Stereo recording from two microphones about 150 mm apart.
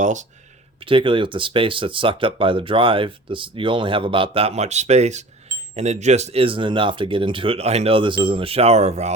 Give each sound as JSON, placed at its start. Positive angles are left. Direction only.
{"t": 0.0, "sound": "speech", "side_deg": -55}
{"t": 0.9, "sound": "speech", "side_deg": -35}